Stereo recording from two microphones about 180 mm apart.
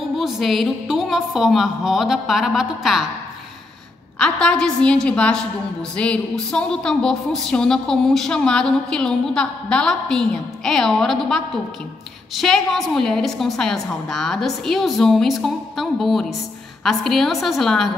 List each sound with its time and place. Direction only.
0.2 s a woman's voice: centre (ahead or behind)
4.2 s a woman's voice: 5° left (ahead or behind)